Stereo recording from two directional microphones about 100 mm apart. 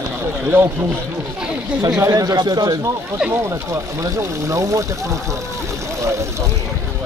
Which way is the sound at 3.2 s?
5° right (ahead or behind).